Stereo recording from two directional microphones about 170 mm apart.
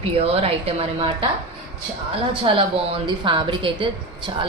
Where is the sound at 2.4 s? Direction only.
30° right (ahead or behind).